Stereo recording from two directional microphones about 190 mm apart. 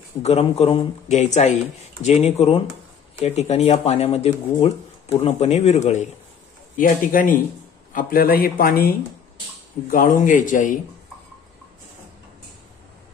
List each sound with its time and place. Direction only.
0.2 s a man's voice: 35° left (ahead or behind)